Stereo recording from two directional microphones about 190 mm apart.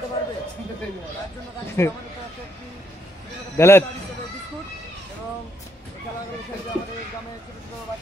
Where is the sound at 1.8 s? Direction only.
15° left (ahead or behind).